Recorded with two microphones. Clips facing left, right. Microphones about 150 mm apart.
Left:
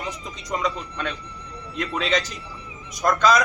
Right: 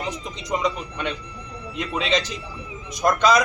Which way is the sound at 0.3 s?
20° right (ahead or behind).